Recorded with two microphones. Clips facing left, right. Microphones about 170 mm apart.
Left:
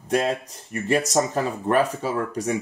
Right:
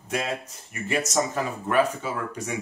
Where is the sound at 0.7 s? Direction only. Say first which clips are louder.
Left 5 dB; 35° left (ahead or behind).